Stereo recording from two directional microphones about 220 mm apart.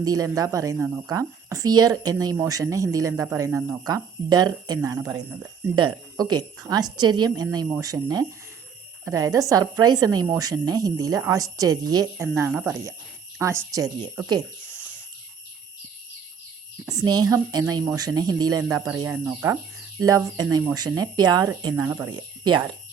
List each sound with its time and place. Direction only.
0.0 s a woman's voice: 15° right (ahead or behind)
17.0 s a woman's voice: 15° right (ahead or behind)